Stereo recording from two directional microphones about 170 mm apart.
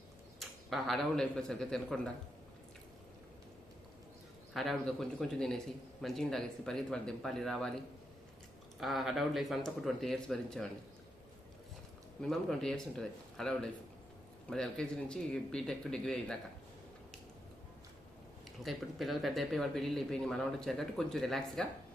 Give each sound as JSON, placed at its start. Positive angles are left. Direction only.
{"t": 0.3, "sound": "a man's voice", "side_deg": 0}
{"t": 4.5, "sound": "speech", "side_deg": 0}
{"t": 8.8, "sound": "speech", "side_deg": 0}
{"t": 12.2, "sound": "speech", "side_deg": 0}
{"t": 18.6, "sound": "speech", "side_deg": 0}